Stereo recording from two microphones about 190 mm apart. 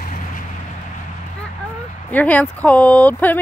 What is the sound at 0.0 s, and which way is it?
Vehicle, 40° left (ahead or behind).